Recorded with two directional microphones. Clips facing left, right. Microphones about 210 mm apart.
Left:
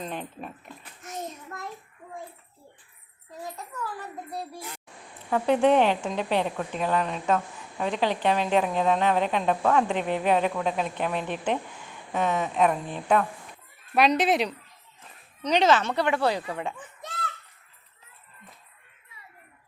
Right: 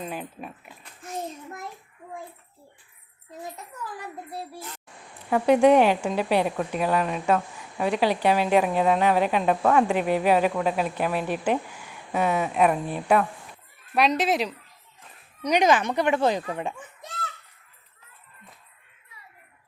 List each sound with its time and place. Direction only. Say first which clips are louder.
0.0 s speech: right 1 dB; 5° right (ahead or behind)
5.3 s speech: right 3 dB; 10° right (ahead or behind)
15.4 s speech: right 1 dB; 15° right (ahead or behind)